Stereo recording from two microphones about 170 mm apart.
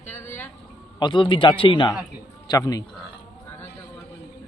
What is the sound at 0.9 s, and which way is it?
A man's voice, 25° left (ahead or behind).